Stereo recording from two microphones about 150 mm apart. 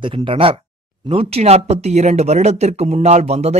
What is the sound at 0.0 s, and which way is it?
Speech, 35° right (ahead or behind).